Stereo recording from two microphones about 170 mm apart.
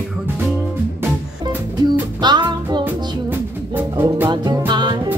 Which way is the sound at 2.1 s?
25° right (ahead or behind).